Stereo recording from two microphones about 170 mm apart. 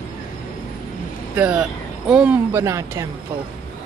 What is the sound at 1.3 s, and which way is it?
Speech, 5° right (ahead or behind).